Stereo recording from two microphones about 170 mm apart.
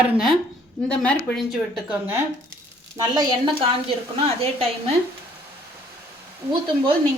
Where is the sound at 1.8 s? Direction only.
10° right (ahead or behind).